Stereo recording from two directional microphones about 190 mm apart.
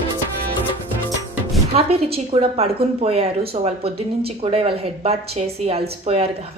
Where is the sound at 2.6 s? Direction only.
30° right (ahead or behind).